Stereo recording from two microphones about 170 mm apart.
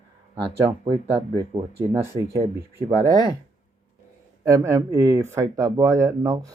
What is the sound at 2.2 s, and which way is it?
Speech, 20° right (ahead or behind).